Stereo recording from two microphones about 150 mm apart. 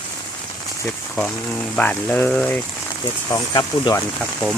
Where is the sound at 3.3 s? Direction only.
25° left (ahead or behind).